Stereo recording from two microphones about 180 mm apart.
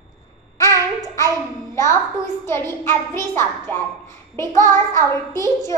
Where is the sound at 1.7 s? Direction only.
15° left (ahead or behind).